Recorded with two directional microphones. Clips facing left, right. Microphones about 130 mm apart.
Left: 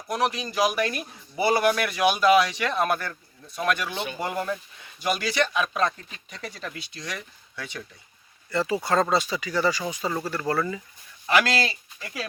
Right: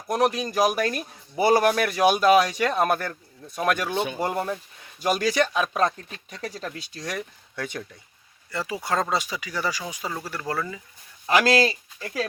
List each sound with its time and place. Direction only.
0.1 s speech: 45° right (ahead or behind)
8.4 s speech: 10° right (ahead or behind)
11.3 s speech: 40° right (ahead or behind)